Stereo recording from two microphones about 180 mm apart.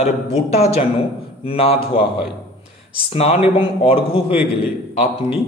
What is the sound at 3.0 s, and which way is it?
A man's voice, 30° left (ahead or behind).